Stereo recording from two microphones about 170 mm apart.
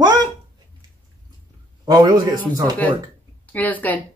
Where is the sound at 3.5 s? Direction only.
10° left (ahead or behind).